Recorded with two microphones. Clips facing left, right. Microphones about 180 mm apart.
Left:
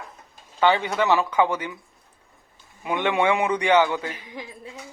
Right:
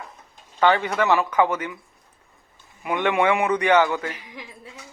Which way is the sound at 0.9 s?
20° left (ahead or behind).